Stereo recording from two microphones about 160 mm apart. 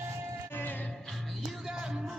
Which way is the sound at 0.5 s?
10° left (ahead or behind).